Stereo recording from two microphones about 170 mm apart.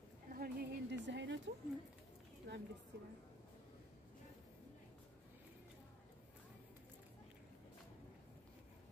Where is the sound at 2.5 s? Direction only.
90° right.